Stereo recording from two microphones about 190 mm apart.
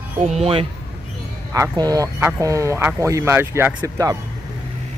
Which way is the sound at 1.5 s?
20° right (ahead or behind).